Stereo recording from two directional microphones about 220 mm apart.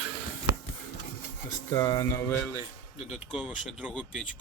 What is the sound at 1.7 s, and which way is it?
Speech, 15° left (ahead or behind).